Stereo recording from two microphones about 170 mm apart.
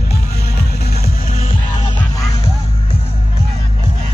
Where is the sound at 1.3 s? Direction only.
35° left (ahead or behind).